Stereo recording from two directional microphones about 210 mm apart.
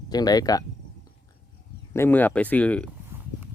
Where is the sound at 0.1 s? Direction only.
20° left (ahead or behind).